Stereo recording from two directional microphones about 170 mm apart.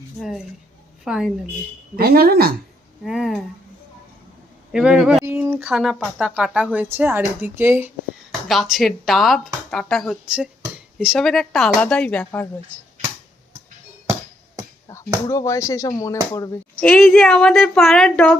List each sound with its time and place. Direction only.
0.2 s a woman's voice: centre (ahead or behind)
2.0 s speech: 60° right (ahead or behind)
3.0 s a woman's voice: 5° right (ahead or behind)
4.7 s a woman's voice: 5° right (ahead or behind)
5.2 s speech: 15° right (ahead or behind)
5.7 s a woman's voice: centre (ahead or behind)
8.3 s a woman's voice: centre (ahead or behind)
15.3 s speech: 20° left (ahead or behind)
16.8 s a woman's voice: 5° left (ahead or behind)